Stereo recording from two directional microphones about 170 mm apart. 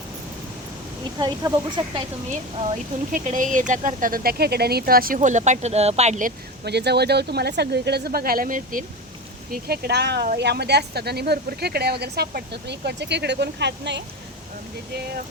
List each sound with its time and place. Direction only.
1.2 s speech: 25° right (ahead or behind)
2.6 s speech: 50° right (ahead or behind)
6.7 s a woman's voice: 75° right (ahead or behind); by 8.8 s 50° right (ahead or behind)
9.5 s a woman's voice: 65° right (ahead or behind); by 14.0 s 90° right